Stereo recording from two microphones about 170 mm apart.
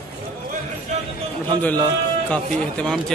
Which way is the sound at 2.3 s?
5° left (ahead or behind).